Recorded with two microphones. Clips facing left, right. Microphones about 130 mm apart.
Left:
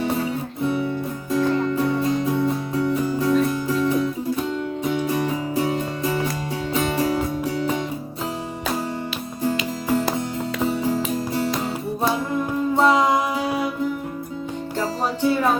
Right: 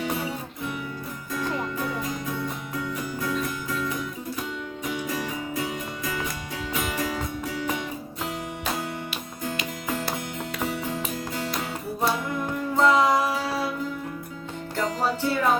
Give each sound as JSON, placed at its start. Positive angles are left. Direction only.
{"t": 0.6, "sound": "music", "side_deg": 30}
{"t": 9.4, "sound": "music", "side_deg": 30}
{"t": 12.7, "sound": "music", "side_deg": 25}
{"t": 14.8, "sound": "music", "side_deg": 20}